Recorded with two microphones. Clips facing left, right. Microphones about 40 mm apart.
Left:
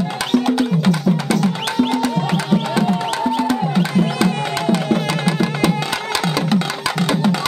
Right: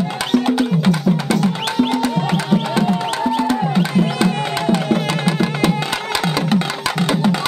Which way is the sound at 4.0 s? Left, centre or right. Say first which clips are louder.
Even; right.